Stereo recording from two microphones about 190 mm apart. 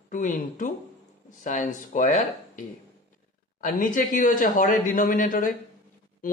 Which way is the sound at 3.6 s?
45° left (ahead or behind).